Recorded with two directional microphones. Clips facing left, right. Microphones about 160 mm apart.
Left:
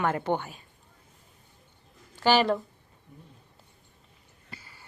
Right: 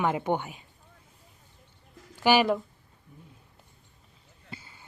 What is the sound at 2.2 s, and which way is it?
Speech, 10° right (ahead or behind).